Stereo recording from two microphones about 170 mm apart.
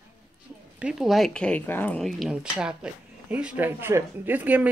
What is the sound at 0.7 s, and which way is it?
Speech, 5° right (ahead or behind).